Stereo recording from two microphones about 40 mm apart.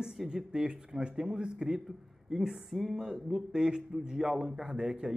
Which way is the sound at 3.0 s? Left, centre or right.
Centre.